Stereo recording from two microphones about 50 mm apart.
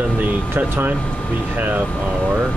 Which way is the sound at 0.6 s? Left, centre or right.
Right.